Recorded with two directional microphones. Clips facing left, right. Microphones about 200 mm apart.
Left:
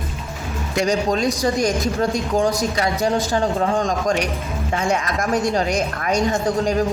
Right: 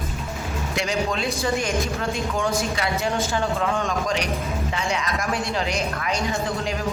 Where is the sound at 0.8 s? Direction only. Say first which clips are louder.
Left 6 dB; 40° left (ahead or behind).